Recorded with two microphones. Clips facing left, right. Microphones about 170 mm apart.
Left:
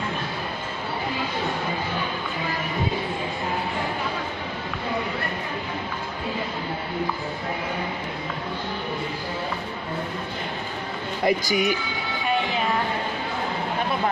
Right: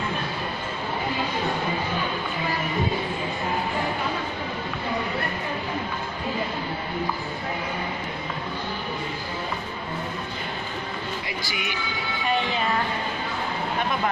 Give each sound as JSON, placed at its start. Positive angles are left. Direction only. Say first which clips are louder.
{"t": 11.2, "sound": "speech", "louder": "left 10 dB", "side_deg": 40}